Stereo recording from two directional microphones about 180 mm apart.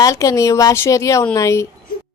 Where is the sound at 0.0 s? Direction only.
20° left (ahead or behind).